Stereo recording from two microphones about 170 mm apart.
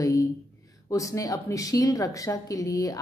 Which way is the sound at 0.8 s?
20° left (ahead or behind).